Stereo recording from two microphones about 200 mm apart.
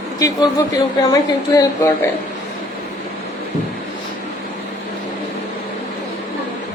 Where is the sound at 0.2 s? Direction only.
15° left (ahead or behind).